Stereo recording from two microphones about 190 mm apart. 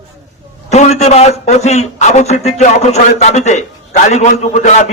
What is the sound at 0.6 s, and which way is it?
A man's voice, 35° left (ahead or behind).